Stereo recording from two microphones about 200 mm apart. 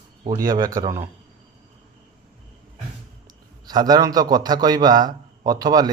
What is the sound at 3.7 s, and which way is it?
Speech, 20° right (ahead or behind).